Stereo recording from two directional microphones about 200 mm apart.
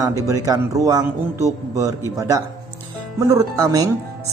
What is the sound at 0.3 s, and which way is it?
A man's voice, 15° right (ahead or behind).